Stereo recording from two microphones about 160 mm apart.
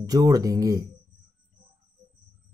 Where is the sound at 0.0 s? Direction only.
25° right (ahead or behind).